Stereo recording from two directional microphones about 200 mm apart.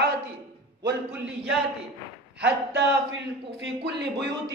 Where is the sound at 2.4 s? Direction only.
60° right (ahead or behind).